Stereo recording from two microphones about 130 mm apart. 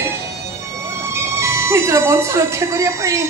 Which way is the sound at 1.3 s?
20° right (ahead or behind).